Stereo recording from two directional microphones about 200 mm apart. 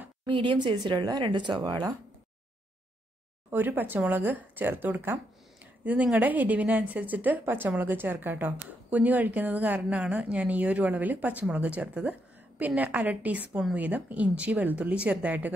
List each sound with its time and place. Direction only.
0.3 s speech: 25° right (ahead or behind)
3.4 s a woman's voice: 10° right (ahead or behind)